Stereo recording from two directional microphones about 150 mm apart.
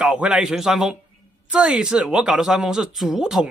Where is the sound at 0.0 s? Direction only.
5° right (ahead or behind).